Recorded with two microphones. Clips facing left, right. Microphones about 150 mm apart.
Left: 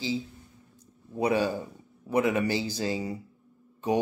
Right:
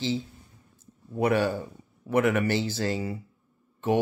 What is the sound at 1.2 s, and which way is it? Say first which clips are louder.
Speech: right 2 dB; 15° left (ahead or behind).